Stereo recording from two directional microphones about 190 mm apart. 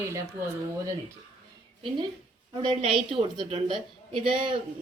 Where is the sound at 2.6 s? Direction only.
25° right (ahead or behind).